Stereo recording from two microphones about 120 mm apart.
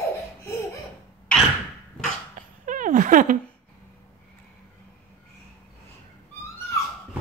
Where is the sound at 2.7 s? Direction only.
90° right.